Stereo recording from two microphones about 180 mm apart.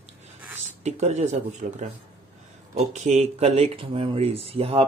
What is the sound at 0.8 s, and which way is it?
Speech, 40° right (ahead or behind).